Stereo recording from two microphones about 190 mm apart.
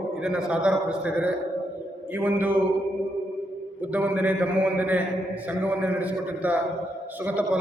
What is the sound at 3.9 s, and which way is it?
A man's voice, 10° right (ahead or behind).